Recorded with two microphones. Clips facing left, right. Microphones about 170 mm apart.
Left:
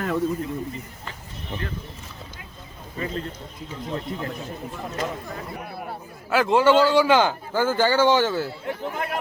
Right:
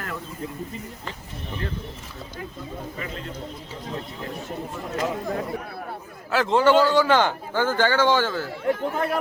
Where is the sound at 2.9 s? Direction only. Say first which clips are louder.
Left 10 dB; 35° left (ahead or behind).